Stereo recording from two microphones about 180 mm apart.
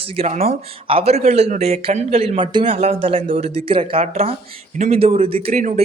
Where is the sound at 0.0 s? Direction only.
30° right (ahead or behind).